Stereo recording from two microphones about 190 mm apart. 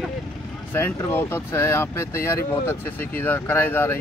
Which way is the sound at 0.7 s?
10° left (ahead or behind).